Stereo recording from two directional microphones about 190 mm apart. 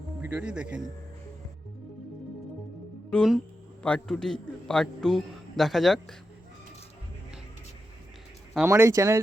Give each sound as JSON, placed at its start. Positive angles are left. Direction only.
{"t": 0.2, "sound": "speech", "side_deg": -10}
{"t": 3.1, "sound": "a man's voice", "side_deg": 0}
{"t": 8.6, "sound": "speech", "side_deg": -15}